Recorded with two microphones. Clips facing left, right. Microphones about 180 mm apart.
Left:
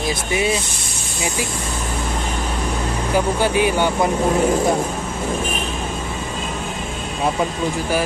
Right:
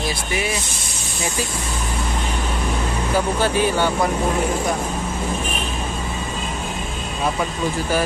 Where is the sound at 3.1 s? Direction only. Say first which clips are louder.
Left 2 dB; 15° left (ahead or behind).